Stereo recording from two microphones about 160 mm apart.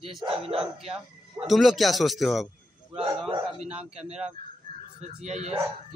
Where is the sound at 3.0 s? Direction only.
35° right (ahead or behind).